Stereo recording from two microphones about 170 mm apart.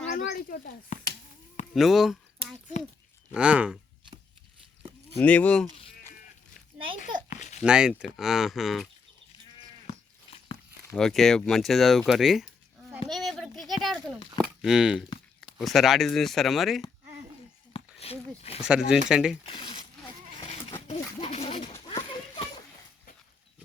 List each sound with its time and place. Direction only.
0.3 s speech: 60° left (ahead or behind)
1.7 s speech: centre (ahead or behind)
3.3 s speech: 5° right (ahead or behind)
5.1 s speech: 10° left (ahead or behind)
7.3 s a sound: 45° left (ahead or behind)
7.6 s speech: 5° right (ahead or behind)
10.9 s speech: centre (ahead or behind)
13.1 s a sound: centre (ahead or behind)
14.6 s speech: 5° right (ahead or behind)
17.7 s a sound: 35° left (ahead or behind)
18.6 s speech: 5° right (ahead or behind)
19.5 s zipper: 30° left (ahead or behind)
20.4 s a sound: 35° left (ahead or behind)